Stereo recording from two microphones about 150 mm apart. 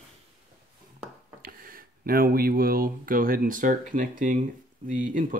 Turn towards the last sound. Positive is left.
turn(degrees=-65)  # may be behind; listen again after turning